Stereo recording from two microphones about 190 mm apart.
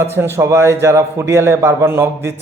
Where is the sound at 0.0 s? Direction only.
10° right (ahead or behind).